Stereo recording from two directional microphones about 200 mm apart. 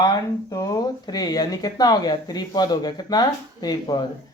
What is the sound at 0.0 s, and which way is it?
Speech, 20° left (ahead or behind).